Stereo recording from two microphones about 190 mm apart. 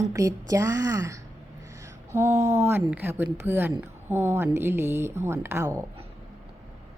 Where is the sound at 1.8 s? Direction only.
15° right (ahead or behind).